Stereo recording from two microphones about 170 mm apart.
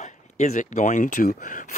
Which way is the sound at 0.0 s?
45° left (ahead or behind).